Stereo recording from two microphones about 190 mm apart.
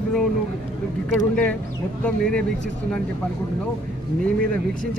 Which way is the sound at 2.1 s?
5° left (ahead or behind).